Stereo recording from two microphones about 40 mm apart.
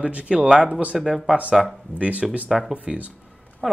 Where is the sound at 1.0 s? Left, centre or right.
Centre.